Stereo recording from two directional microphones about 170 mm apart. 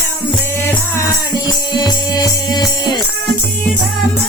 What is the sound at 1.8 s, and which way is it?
Music, 25° left (ahead or behind).